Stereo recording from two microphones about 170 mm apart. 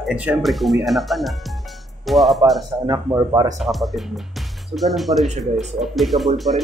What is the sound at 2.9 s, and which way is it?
Speech, 20° right (ahead or behind).